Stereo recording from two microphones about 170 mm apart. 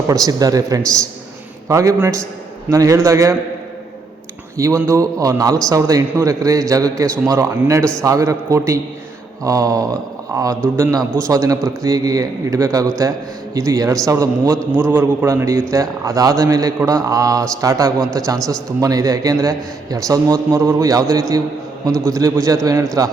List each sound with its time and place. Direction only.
0.1 s a man's voice: 20° right (ahead or behind)
4.5 s a man's voice: 20° right (ahead or behind)
14.5 s a man's voice: 5° left (ahead or behind)
14.8 s a man's voice: 10° right (ahead or behind)